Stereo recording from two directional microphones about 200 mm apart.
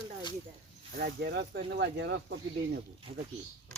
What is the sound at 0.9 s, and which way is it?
Speech, 50° right (ahead or behind).